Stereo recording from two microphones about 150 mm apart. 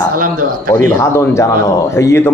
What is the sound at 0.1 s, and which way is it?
Speech, 65° right (ahead or behind).